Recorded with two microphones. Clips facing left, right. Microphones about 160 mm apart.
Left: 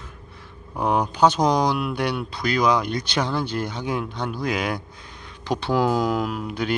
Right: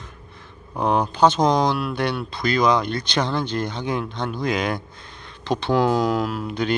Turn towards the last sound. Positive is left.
turn(degrees=5)  # may be behind; listen again after turning